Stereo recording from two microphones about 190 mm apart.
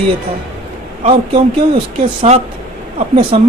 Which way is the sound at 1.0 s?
30° right (ahead or behind).